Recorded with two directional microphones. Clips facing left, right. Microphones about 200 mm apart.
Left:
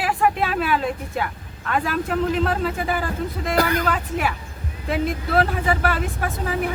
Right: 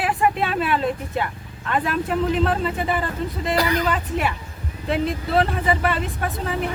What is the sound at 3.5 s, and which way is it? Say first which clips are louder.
Speech: left 1 dB; 50° left (ahead or behind).